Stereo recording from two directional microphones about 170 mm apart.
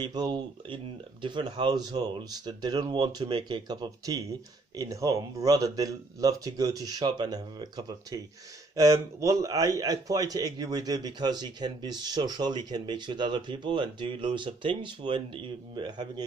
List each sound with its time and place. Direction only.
0.0 s a man's voice: 25° right (ahead or behind)